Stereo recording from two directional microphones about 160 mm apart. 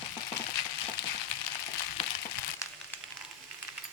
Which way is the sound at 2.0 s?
35° left (ahead or behind).